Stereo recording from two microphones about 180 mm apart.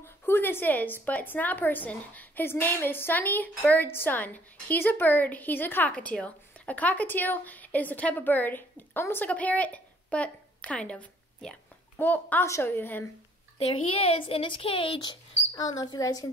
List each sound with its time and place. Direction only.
0.0 s a woman's voice: 10° left (ahead or behind)
13.6 s speech: 35° left (ahead or behind)